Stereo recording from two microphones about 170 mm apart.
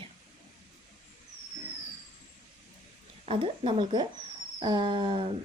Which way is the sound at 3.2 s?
30° right (ahead or behind).